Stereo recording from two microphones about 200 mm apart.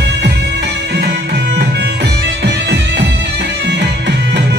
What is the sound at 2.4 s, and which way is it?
Music, 60° right (ahead or behind).